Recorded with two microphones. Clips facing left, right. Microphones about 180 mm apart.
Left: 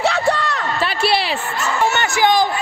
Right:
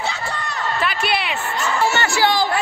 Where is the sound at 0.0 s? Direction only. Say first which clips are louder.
Left 9 dB; 70° left (ahead or behind).